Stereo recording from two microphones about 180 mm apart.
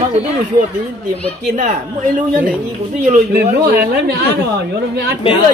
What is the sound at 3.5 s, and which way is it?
Speech, 60° right (ahead or behind).